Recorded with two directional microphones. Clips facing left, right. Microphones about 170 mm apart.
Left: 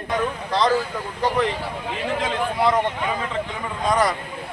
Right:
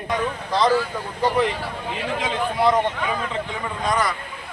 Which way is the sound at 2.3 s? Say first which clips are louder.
Right 2 dB; centre (ahead or behind).